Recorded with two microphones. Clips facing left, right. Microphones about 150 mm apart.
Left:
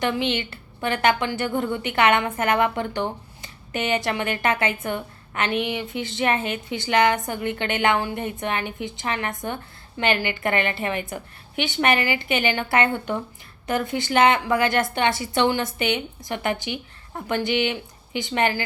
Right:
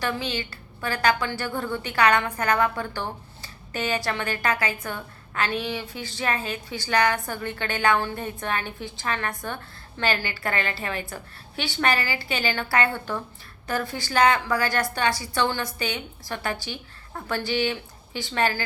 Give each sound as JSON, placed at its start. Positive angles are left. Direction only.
{"t": 0.0, "sound": "a woman's voice", "side_deg": 20}